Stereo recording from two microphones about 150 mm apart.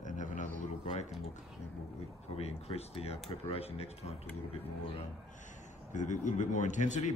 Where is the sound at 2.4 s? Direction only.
45° left (ahead or behind).